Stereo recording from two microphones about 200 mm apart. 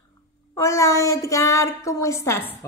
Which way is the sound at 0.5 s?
15° left (ahead or behind).